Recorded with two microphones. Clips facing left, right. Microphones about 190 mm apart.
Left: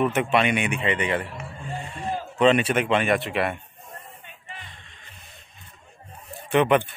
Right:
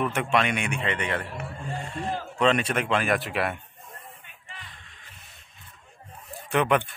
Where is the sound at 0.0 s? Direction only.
5° left (ahead or behind).